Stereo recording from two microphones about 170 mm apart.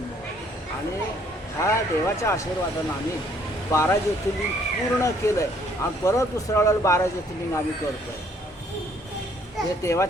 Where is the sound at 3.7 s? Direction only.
15° left (ahead or behind).